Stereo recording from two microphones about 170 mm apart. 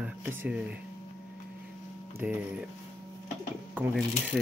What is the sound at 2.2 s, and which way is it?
Speech, 10° right (ahead or behind).